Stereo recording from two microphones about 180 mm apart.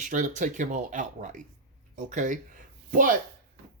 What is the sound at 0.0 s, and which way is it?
Speech, 45° right (ahead or behind).